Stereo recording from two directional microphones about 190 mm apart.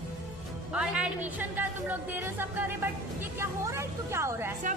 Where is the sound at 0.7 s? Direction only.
5° right (ahead or behind).